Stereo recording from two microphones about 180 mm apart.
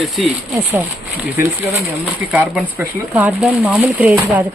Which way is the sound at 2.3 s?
10° right (ahead or behind).